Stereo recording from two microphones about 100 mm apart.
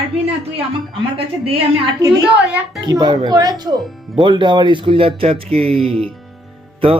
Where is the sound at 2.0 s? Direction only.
5° right (ahead or behind).